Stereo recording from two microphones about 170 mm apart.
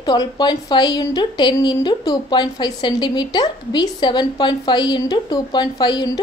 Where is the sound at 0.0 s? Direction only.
25° left (ahead or behind).